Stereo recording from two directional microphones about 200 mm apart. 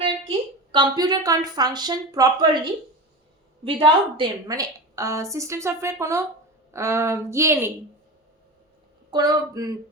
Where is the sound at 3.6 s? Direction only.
25° right (ahead or behind).